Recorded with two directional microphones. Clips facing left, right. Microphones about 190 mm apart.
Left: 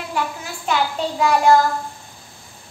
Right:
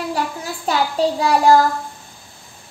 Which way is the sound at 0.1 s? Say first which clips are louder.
Right 2 dB; 35° right (ahead or behind).